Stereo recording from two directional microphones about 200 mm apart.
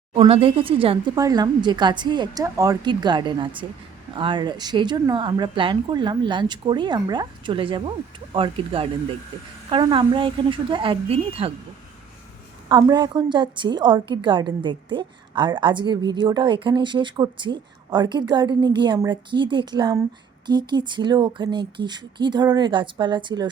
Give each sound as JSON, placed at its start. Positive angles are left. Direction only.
{"t": 0.1, "sound": "a woman's voice", "side_deg": -30}
{"t": 12.6, "sound": "a woman's voice", "side_deg": -20}